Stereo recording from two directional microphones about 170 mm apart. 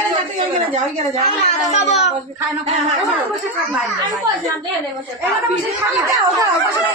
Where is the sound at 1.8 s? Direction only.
40° left (ahead or behind).